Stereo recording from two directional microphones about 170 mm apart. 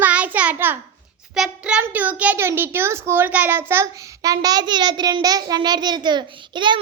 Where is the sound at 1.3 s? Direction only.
5° right (ahead or behind).